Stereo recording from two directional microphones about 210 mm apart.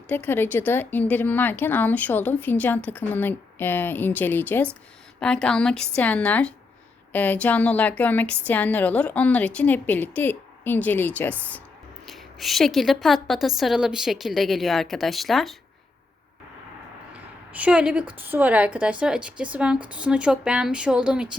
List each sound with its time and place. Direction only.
0.1 s a woman's voice: 10° left (ahead or behind)
17.5 s a woman's voice: 5° right (ahead or behind)